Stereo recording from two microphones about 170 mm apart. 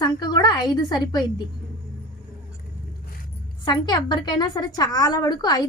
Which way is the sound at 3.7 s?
25° left (ahead or behind).